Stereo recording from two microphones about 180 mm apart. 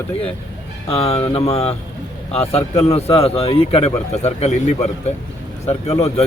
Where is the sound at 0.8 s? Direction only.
35° left (ahead or behind).